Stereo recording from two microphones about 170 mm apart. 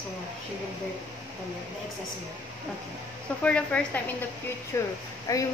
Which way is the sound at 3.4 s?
10° left (ahead or behind).